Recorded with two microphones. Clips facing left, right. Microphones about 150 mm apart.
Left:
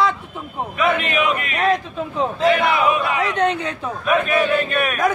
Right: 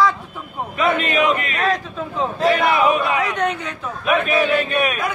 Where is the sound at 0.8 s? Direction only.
35° right (ahead or behind).